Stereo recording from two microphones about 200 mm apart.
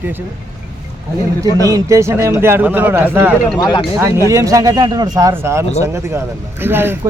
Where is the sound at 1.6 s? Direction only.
15° right (ahead or behind).